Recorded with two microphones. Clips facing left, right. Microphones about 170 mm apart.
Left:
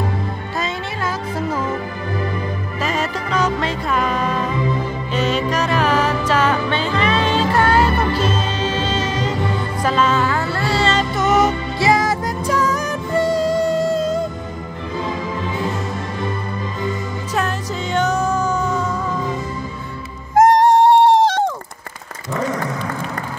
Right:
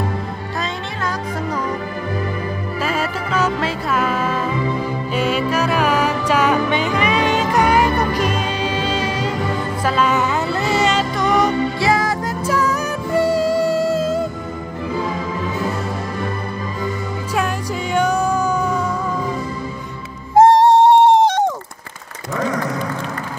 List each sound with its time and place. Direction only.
0.6 s music: 5° left (ahead or behind)
2.8 s music: 5° right (ahead or behind)
11.1 s music: 5° left (ahead or behind)
17.9 s music: 10° right (ahead or behind)
20.3 s music: 25° right (ahead or behind)